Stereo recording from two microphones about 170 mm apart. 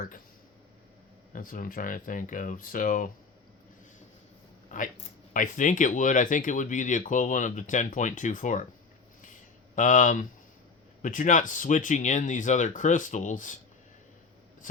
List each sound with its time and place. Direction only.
1.3 s speech: 50° left (ahead or behind)
4.7 s speech: 50° left (ahead or behind)
9.7 s speech: 50° left (ahead or behind)